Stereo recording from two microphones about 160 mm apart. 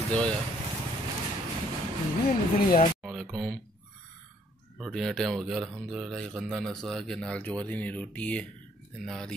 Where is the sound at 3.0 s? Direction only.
Centre (ahead or behind).